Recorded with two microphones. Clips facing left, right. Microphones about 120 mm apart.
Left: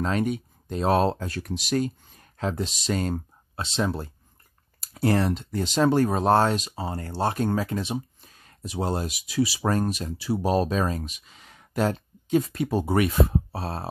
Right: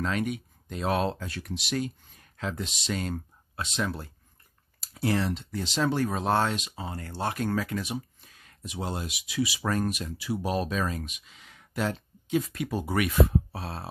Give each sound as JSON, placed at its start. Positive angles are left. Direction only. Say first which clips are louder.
{"t": 0.0, "sound": "speech", "louder": "left 4 dB", "side_deg": 35}
{"t": 4.7, "sound": "speech", "louder": "left 4 dB", "side_deg": 50}